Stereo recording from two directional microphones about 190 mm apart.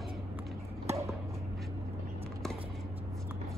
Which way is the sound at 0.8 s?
15° right (ahead or behind).